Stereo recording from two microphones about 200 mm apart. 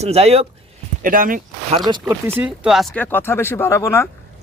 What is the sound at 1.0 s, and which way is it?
Speech, 45° right (ahead or behind).